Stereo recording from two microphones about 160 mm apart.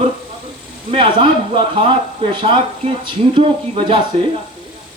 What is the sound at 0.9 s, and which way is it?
Speech, 30° right (ahead or behind).